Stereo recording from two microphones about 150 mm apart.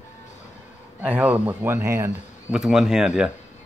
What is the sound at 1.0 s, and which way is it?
A man's voice, 10° right (ahead or behind).